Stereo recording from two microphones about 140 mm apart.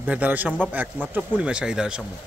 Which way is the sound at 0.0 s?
10° right (ahead or behind).